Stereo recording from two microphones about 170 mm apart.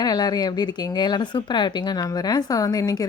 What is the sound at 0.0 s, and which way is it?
Speech, 25° left (ahead or behind).